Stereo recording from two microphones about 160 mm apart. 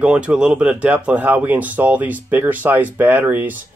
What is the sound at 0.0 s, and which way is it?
Speech, 10° right (ahead or behind).